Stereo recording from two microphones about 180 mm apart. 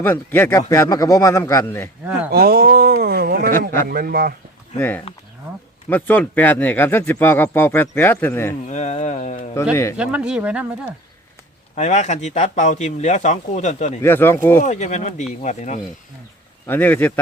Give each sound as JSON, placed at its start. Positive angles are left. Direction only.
{"t": 0.0, "sound": "speech", "side_deg": 10}
{"t": 2.3, "sound": "speech", "side_deg": -60}
{"t": 4.8, "sound": "speech", "side_deg": 10}
{"t": 8.6, "sound": "speech", "side_deg": 40}
{"t": 10.0, "sound": "speech", "side_deg": -5}
{"t": 11.7, "sound": "speech", "side_deg": 40}
{"t": 14.0, "sound": "speech", "side_deg": 10}
{"t": 14.6, "sound": "speech", "side_deg": 40}
{"t": 16.6, "sound": "speech", "side_deg": 10}